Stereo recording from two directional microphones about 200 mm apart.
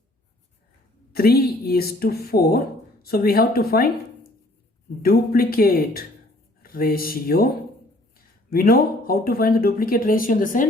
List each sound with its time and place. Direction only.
1.1 s speech: 50° left (ahead or behind)
8.4 s speech: 45° left (ahead or behind)